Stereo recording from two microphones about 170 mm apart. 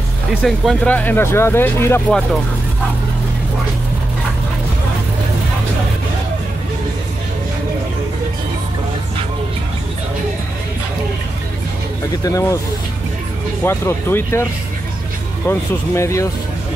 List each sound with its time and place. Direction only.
0.3 s speech: centre (ahead or behind)
12.3 s speech: 20° left (ahead or behind)
13.7 s speech: 15° left (ahead or behind)
15.4 s speech: 15° left (ahead or behind)